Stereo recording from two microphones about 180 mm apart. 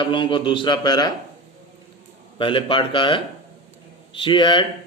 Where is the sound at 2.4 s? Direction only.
30° left (ahead or behind).